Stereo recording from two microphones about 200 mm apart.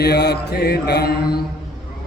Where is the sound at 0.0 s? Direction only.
55° left (ahead or behind).